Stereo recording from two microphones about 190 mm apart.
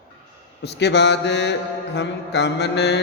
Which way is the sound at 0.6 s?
60° left (ahead or behind).